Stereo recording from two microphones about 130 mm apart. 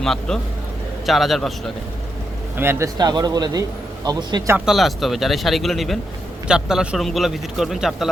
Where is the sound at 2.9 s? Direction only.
30° right (ahead or behind).